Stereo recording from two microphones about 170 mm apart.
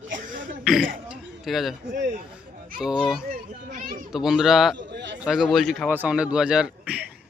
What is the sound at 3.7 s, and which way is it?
Children playing, 50° right (ahead or behind).